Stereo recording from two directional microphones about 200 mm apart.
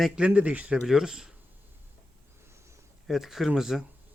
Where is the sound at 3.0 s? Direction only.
Centre (ahead or behind).